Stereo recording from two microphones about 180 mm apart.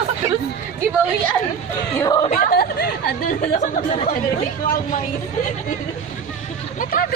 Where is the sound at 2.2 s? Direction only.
45° left (ahead or behind).